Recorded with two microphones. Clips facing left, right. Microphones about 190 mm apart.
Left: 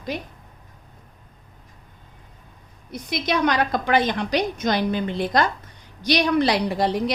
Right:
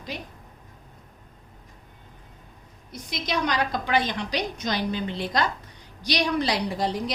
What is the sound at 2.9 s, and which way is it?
A woman's voice, 60° left (ahead or behind).